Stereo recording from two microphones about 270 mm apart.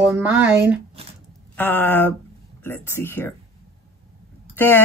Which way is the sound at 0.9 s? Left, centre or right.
Right.